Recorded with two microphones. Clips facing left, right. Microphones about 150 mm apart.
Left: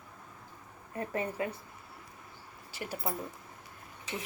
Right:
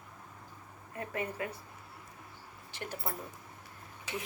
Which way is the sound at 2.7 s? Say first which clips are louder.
Left 3 dB; 10° left (ahead or behind).